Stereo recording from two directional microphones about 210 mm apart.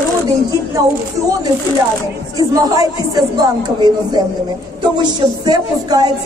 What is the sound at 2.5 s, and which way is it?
A woman's voice, 15° right (ahead or behind).